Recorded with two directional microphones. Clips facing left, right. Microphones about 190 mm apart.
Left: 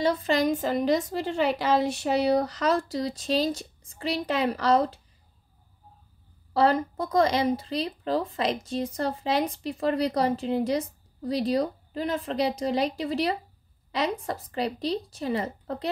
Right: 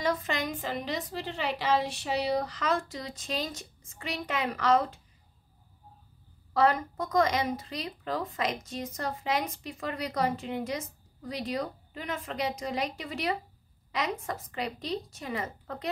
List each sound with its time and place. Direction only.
0.0 s speech: 30° left (ahead or behind)
6.5 s speech: 30° left (ahead or behind)